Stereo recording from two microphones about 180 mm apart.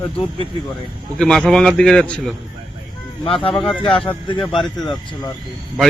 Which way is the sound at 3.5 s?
5° left (ahead or behind).